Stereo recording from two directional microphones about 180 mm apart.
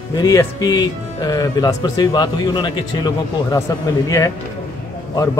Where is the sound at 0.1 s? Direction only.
20° left (ahead or behind).